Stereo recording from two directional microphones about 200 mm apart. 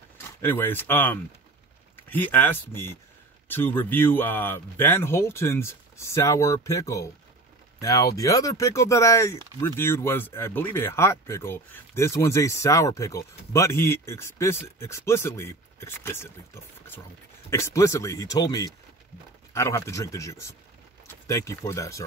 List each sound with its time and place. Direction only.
0.4 s speech: 10° left (ahead or behind)
17.5 s speech: 15° left (ahead or behind)